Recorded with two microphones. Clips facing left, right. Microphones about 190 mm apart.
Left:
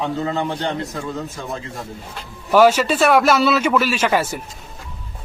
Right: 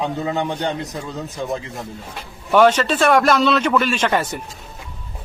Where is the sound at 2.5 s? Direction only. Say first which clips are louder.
Left 1 dB; 5° left (ahead or behind).